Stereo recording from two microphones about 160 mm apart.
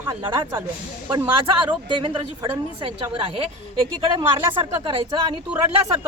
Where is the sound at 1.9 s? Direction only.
30° right (ahead or behind).